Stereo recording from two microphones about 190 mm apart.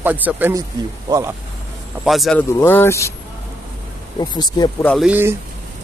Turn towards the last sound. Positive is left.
turn(degrees=-10)  # may be behind; listen again after turning